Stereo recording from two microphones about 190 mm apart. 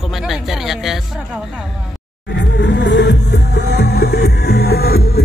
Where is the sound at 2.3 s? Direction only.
70° left (ahead or behind).